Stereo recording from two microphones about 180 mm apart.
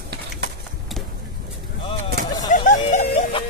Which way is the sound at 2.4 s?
45° left (ahead or behind).